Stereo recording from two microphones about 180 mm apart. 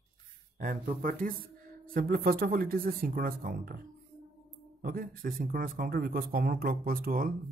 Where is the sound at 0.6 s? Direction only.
50° right (ahead or behind).